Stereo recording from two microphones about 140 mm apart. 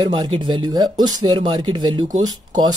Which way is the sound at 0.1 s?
35° right (ahead or behind).